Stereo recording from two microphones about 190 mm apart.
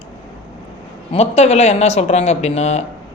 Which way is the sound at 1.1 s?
35° left (ahead or behind).